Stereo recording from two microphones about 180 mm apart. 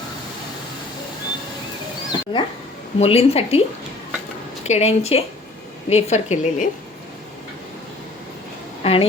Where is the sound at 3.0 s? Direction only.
35° left (ahead or behind).